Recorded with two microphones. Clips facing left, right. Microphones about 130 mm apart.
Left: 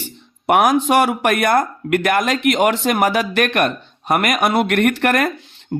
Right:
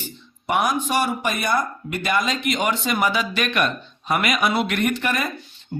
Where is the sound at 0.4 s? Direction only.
75° left (ahead or behind).